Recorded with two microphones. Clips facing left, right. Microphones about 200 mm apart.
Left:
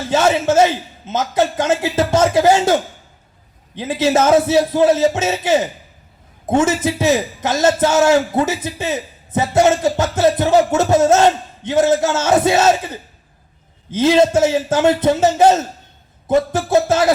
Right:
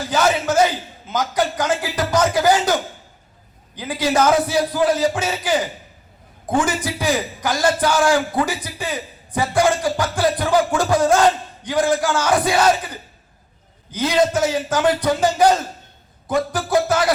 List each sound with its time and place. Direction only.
0.0 s a man's voice: 25° left (ahead or behind)